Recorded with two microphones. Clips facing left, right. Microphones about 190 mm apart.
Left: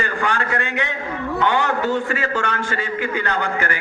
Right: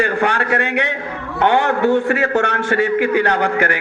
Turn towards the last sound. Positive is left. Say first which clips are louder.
# right 6 dB
turn(degrees=-65)  # may be behind; listen again after turning